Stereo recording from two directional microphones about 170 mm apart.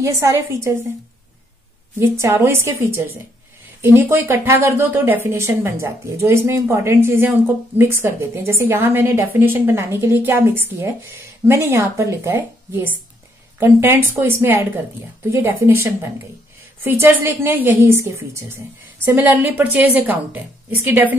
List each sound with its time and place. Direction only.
0.0 s speech: 15° right (ahead or behind)
2.0 s speech: 15° right (ahead or behind)